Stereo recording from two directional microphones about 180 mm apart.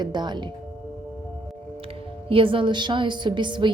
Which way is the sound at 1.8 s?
30° right (ahead or behind).